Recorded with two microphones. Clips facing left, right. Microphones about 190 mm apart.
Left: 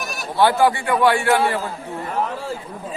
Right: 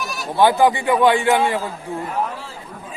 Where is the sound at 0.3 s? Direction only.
15° right (ahead or behind).